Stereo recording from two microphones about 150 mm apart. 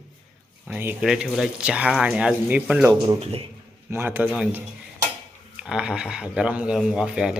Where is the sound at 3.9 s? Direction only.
15° right (ahead or behind).